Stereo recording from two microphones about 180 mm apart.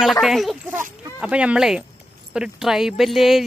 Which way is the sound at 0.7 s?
5° right (ahead or behind).